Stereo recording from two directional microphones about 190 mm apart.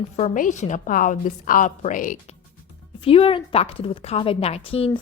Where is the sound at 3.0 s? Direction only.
30° left (ahead or behind).